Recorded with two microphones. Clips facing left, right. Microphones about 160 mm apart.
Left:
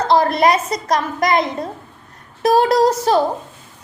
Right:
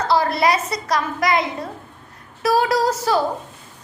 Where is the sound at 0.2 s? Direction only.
45° left (ahead or behind).